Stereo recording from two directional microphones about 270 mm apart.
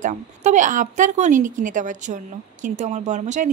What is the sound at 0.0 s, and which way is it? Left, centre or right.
A woman's voice, right.